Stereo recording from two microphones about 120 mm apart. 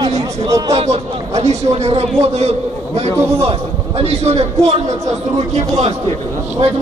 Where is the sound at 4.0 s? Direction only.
65° right (ahead or behind).